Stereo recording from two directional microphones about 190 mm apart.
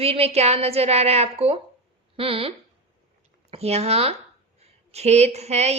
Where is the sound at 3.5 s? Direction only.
35° right (ahead or behind).